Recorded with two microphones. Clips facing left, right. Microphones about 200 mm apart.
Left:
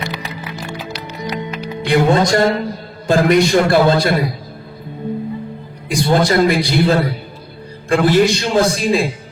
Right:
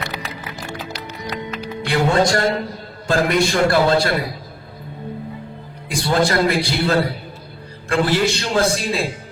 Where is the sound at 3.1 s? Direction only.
20° left (ahead or behind).